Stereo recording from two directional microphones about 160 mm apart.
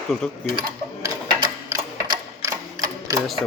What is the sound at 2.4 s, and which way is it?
Sewing machine, 20° right (ahead or behind).